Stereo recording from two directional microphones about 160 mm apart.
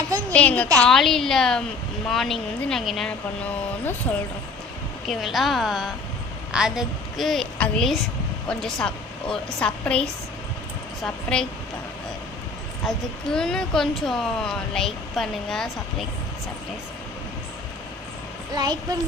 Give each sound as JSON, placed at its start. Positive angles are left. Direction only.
{"t": 0.3, "sound": "a woman's voice", "side_deg": 10}
{"t": 5.0, "sound": "a woman's voice", "side_deg": 0}
{"t": 12.8, "sound": "a woman's voice", "side_deg": 5}
{"t": 18.5, "sound": "a child's voice", "side_deg": -25}